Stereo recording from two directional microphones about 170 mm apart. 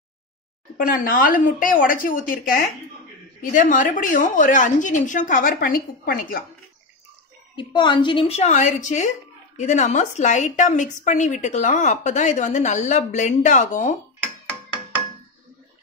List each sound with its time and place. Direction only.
0.7 s a woman's voice: 55° left (ahead or behind)
7.5 s a woman's voice: 25° left (ahead or behind); by 13.9 s 45° left (ahead or behind)